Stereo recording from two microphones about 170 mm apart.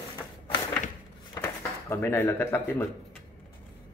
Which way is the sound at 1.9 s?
15° left (ahead or behind).